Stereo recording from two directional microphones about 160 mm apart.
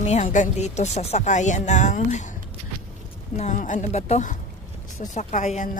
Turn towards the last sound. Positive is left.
turn(degrees=50)  # may be behind; listen again after turning